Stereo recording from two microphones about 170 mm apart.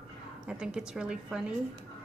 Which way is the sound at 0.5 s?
5° right (ahead or behind).